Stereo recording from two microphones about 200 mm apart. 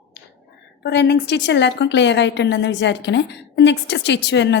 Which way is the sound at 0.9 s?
55° left (ahead or behind).